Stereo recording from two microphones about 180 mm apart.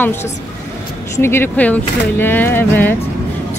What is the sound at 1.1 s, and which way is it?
A woman's voice, 15° left (ahead or behind).